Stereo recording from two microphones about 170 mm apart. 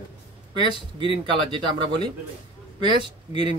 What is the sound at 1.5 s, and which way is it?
Speech, 25° right (ahead or behind).